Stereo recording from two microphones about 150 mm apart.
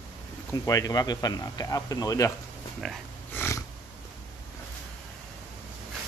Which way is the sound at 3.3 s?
15° left (ahead or behind).